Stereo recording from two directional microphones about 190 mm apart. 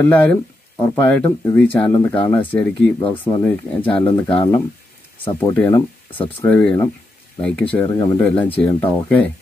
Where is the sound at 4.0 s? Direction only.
25° left (ahead or behind).